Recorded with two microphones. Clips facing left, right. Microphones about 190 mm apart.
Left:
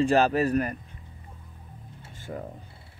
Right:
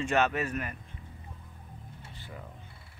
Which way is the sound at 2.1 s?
45° left (ahead or behind).